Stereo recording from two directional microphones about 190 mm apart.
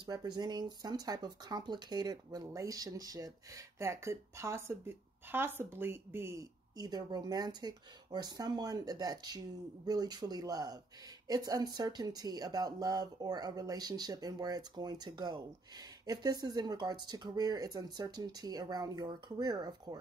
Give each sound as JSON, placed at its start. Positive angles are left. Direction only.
{"t": 0.0, "sound": "speech", "side_deg": -20}